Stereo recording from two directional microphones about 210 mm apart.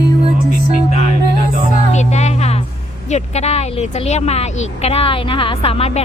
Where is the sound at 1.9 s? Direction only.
30° left (ahead or behind).